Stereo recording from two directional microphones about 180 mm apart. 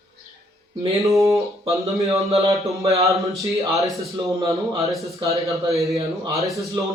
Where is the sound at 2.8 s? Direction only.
15° right (ahead or behind).